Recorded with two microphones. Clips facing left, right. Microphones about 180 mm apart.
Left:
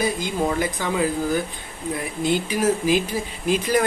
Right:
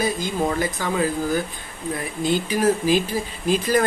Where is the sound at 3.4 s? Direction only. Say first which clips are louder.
Right 1 dB; 15° left (ahead or behind).